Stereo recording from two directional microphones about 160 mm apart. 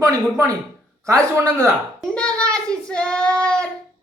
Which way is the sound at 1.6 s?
5° left (ahead or behind).